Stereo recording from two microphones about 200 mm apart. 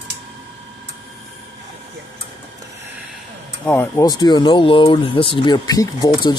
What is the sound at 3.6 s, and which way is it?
Speech, 10° left (ahead or behind).